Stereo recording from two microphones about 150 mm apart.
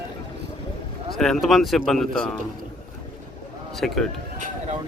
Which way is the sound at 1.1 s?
Centre (ahead or behind).